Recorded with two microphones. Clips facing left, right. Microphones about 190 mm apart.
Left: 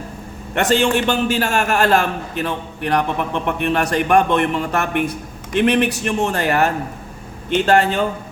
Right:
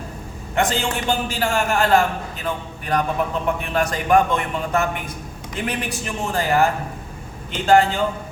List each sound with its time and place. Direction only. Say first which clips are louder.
0.5 s a man's voice: left 5 dB; 70° left (ahead or behind)